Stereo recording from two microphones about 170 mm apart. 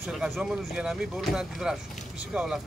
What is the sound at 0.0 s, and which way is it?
Speech, 5° right (ahead or behind).